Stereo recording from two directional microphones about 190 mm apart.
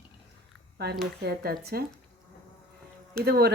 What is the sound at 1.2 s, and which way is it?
Speech, 55° right (ahead or behind).